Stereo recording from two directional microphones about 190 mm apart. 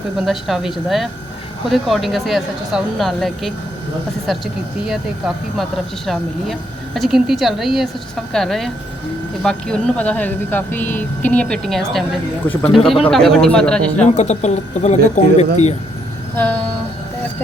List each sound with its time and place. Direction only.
0.2 s speech: centre (ahead or behind)
14.2 s speech: 40° left (ahead or behind)
16.3 s train: 10° left (ahead or behind)